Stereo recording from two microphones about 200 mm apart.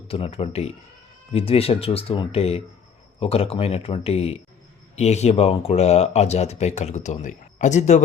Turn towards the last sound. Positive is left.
turn(degrees=35)  # may be behind; listen again after turning